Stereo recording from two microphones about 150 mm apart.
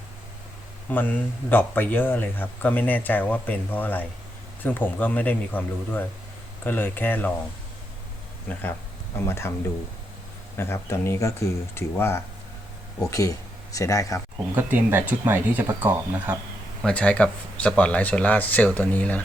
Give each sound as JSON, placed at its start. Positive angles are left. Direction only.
{"t": 0.9, "sound": "a man's voice", "side_deg": 10}
{"t": 9.1, "sound": "a man's voice", "side_deg": 15}
{"t": 10.6, "sound": "a man's voice", "side_deg": 15}
{"t": 14.5, "sound": "speech", "side_deg": -10}
{"t": 16.8, "sound": "a man's voice", "side_deg": 5}